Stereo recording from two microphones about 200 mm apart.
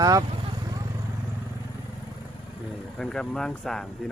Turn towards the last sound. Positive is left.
turn(degrees=5)  # may be behind; listen again after turning